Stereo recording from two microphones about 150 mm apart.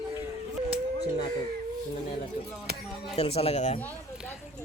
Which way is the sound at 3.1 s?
40° left (ahead or behind).